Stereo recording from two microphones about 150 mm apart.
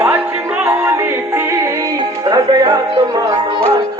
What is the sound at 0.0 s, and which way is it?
Music, 10° right (ahead or behind).